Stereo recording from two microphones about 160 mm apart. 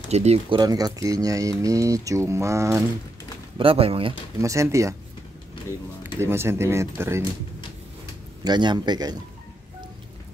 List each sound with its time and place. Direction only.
0.1 s speech: 40° right (ahead or behind)
0.6 s speech: 25° right (ahead or behind)
3.5 s speech: 35° right (ahead or behind)
4.4 s speech: 20° right (ahead or behind)
6.1 s speech: 15° right (ahead or behind)
8.5 s speech: 25° right (ahead or behind)